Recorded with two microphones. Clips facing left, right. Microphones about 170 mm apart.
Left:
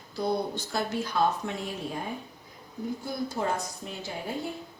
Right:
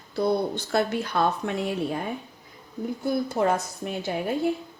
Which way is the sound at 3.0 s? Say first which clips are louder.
Right 9 dB; 65° right (ahead or behind).